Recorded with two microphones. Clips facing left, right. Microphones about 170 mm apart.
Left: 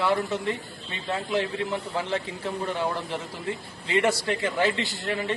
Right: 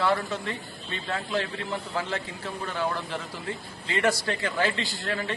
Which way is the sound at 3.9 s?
25° left (ahead or behind).